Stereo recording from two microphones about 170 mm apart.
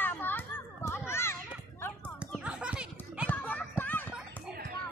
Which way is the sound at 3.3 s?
10° left (ahead or behind).